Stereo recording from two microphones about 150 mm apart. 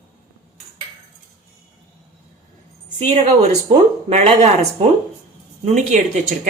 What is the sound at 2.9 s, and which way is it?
Speech, 50° right (ahead or behind).